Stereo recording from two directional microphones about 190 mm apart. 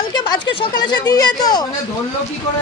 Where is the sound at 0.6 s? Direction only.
20° left (ahead or behind).